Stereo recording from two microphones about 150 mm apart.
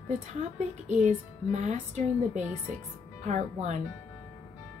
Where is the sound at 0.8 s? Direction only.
50° right (ahead or behind).